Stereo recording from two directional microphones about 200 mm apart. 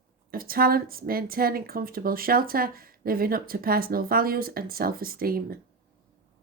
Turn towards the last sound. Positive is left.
turn(degrees=-45)  # may be behind; listen again after turning